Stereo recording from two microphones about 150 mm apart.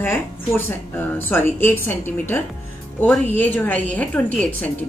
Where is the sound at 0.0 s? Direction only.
15° left (ahead or behind).